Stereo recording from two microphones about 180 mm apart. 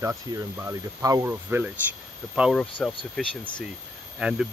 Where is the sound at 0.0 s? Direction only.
20° right (ahead or behind).